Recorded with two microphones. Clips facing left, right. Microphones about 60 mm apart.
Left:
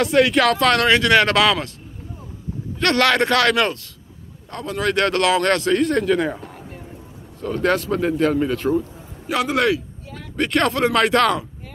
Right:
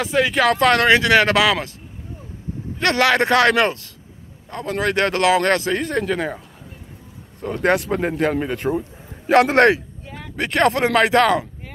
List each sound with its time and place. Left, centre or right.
0.0 s speech: centre
0.5 s speech: right
2.8 s speech: centre
5.8 s speech: centre
7.4 s speech: right
9.3 s speech: right
10.3 s speech: centre